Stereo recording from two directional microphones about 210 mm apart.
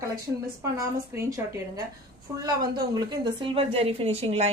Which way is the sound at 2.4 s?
20° right (ahead or behind).